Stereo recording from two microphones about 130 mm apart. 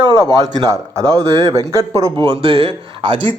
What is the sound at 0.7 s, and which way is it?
Speech, 25° right (ahead or behind).